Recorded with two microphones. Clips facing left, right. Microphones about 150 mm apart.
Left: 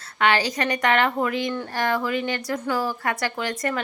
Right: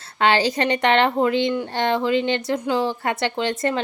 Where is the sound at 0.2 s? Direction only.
30° right (ahead or behind).